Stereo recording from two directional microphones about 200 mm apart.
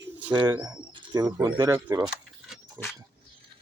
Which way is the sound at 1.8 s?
10° right (ahead or behind).